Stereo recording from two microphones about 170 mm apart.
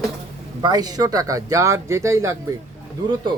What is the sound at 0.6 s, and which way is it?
Speech, 25° right (ahead or behind).